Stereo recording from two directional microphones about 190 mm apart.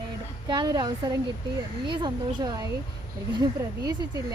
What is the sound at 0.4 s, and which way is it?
A woman's voice, 25° right (ahead or behind).